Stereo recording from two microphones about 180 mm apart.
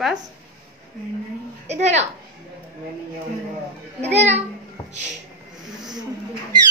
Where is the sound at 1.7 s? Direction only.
40° right (ahead or behind).